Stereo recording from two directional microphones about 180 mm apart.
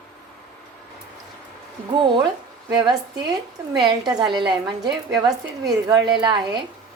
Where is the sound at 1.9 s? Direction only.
25° right (ahead or behind).